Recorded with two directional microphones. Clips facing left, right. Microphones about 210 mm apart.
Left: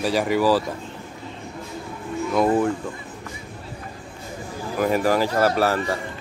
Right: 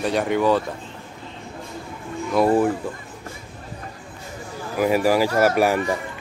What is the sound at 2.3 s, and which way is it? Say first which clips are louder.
Speech: right 2 dB; 5° right (ahead or behind).